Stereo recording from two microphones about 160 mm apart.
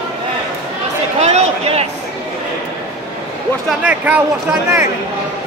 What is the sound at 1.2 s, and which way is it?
Speech, 45° right (ahead or behind).